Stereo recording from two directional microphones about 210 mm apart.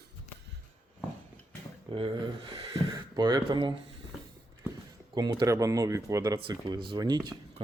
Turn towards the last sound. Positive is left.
turn(degrees=-20)  # may be behind; listen again after turning